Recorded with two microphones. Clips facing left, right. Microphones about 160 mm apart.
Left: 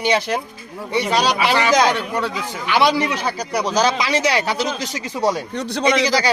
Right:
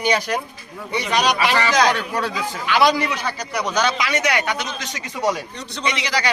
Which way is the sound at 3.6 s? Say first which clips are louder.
Left 3 dB; 35° left (ahead or behind).